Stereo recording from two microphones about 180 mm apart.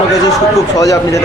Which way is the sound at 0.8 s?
20° left (ahead or behind).